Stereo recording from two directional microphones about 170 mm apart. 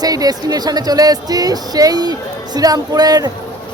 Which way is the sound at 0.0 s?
20° right (ahead or behind).